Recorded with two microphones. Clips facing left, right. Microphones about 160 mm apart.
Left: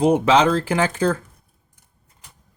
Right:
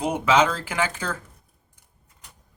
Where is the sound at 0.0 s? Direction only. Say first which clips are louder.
Left 5 dB; 30° left (ahead or behind).